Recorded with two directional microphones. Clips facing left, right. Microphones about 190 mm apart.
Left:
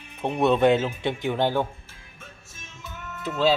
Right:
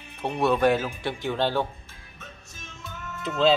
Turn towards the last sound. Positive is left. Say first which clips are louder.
# right 1 dB
turn(degrees=5)  # may be behind; listen again after turning